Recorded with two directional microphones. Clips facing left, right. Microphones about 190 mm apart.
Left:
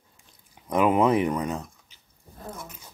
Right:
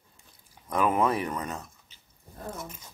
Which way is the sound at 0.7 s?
15° left (ahead or behind).